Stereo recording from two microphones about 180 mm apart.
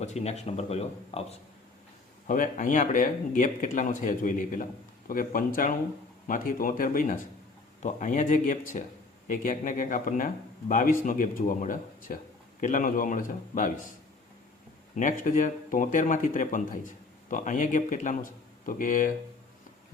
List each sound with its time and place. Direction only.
0.0 s speech: 40° left (ahead or behind)
2.2 s a man's voice: 45° left (ahead or behind)
14.9 s a man's voice: 45° left (ahead or behind)